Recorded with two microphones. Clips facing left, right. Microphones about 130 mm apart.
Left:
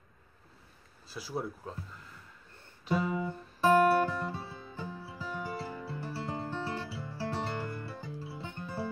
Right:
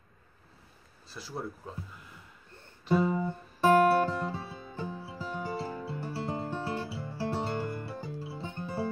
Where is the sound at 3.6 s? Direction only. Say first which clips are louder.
Right 2 dB; 20° right (ahead or behind).